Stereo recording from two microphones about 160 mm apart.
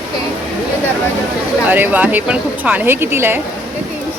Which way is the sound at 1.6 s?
10° right (ahead or behind).